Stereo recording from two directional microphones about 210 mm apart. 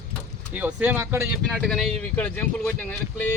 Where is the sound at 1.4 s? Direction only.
Centre (ahead or behind).